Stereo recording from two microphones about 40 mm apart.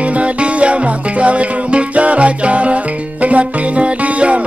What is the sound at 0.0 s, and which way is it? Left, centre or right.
Music, right.